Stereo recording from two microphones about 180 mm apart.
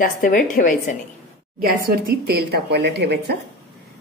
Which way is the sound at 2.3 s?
65° right (ahead or behind).